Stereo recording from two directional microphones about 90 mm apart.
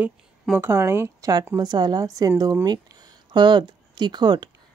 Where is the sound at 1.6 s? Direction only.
50° right (ahead or behind).